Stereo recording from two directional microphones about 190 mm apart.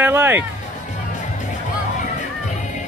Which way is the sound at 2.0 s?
40° left (ahead or behind).